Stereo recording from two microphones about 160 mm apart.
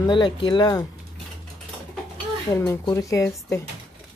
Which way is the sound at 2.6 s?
20° left (ahead or behind).